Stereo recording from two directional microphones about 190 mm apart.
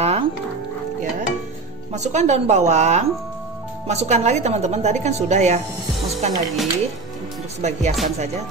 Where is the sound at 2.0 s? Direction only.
35° right (ahead or behind).